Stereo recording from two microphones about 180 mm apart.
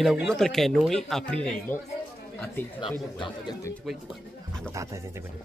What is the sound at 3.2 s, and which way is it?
Speech, 25° left (ahead or behind).